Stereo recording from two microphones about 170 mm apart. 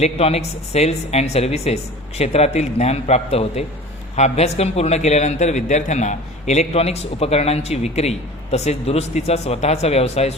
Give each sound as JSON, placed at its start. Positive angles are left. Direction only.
{"t": 0.0, "sound": "a man's voice", "side_deg": 40}